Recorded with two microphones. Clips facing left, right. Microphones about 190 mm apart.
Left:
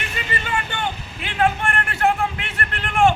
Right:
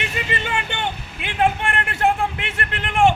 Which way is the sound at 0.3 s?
20° right (ahead or behind).